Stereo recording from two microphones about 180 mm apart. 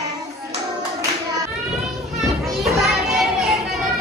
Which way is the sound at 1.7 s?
Centre (ahead or behind).